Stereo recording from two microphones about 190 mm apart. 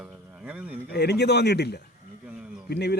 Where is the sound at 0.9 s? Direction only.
60° left (ahead or behind).